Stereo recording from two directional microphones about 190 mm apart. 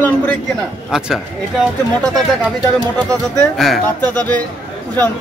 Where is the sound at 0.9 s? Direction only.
5° right (ahead or behind).